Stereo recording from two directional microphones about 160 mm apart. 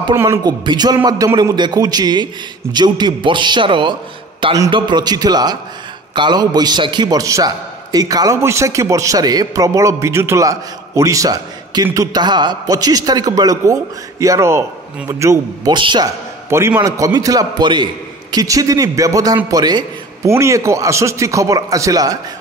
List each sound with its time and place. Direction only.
0.1 s a man's voice: 15° right (ahead or behind)
15.7 s a man's voice: 30° right (ahead or behind)
16.4 s a man's voice: 15° right (ahead or behind)